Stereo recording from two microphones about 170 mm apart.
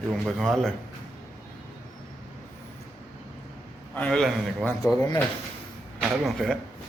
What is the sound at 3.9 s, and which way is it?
Speech, 5° left (ahead or behind).